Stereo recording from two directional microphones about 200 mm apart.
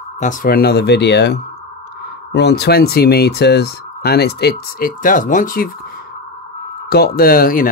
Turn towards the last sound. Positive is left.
turn(degrees=45)  # may be behind; listen again after turning